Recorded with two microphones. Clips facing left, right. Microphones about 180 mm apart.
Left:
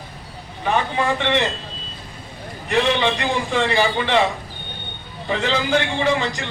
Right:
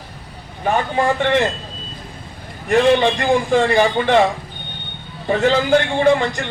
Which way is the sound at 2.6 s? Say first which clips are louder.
Right 5 dB; 45° right (ahead or behind).